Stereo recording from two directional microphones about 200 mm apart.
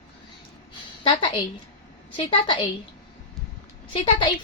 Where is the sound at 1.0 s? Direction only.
25° left (ahead or behind).